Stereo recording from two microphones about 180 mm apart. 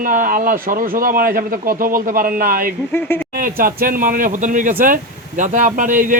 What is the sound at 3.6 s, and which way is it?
A man's voice, 50° right (ahead or behind).